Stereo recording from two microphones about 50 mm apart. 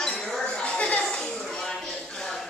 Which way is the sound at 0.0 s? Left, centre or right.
Centre.